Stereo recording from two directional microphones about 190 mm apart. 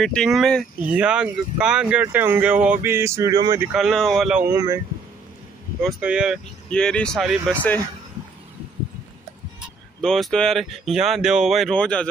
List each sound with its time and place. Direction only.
0.0 s speech: centre (ahead or behind); by 3.6 s 20° right (ahead or behind)
3.7 s speech: centre (ahead or behind)
4.5 s speech: 15° right (ahead or behind)
5.8 s speech: centre (ahead or behind)
10.0 s speech: centre (ahead or behind)